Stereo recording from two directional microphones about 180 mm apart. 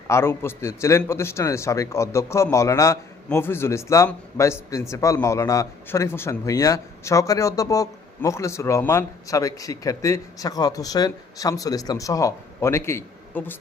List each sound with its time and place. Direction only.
0.1 s a man's voice: 15° left (ahead or behind)